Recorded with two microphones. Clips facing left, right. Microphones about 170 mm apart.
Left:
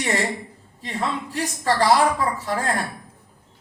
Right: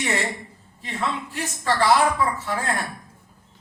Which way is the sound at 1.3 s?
40° left (ahead or behind).